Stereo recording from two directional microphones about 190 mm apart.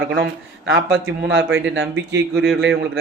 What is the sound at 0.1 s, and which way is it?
A man's voice, 70° right (ahead or behind).